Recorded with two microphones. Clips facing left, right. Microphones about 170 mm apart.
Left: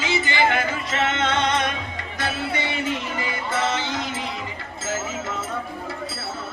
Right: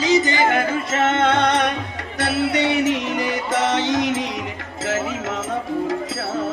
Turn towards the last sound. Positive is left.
turn(degrees=-90)